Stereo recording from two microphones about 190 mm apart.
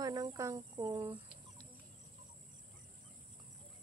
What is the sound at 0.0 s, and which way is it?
Cricket, 20° right (ahead or behind).